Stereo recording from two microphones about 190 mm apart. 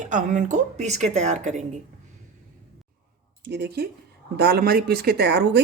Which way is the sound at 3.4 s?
60° right (ahead or behind).